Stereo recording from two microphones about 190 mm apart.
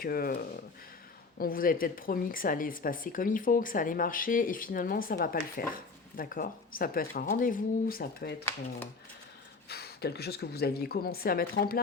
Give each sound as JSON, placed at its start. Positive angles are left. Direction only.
{"t": 0.0, "sound": "speech", "side_deg": 50}
{"t": 9.6, "sound": "speech", "side_deg": 55}